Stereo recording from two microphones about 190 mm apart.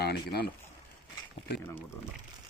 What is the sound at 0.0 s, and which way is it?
Speech, 55° left (ahead or behind).